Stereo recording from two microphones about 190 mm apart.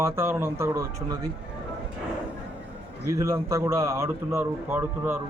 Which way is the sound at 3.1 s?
15° right (ahead or behind).